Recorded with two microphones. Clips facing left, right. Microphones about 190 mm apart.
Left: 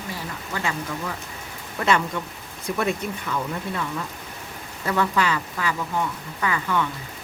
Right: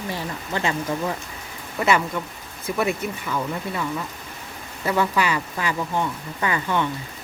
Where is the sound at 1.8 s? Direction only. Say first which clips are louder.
Right 1 dB; 5° right (ahead or behind).